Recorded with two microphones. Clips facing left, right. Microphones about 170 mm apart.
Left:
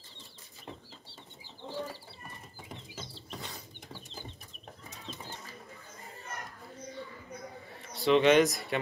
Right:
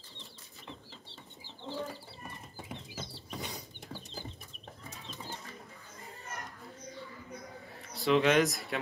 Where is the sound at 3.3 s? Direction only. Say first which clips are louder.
Right 3 dB; 15° right (ahead or behind).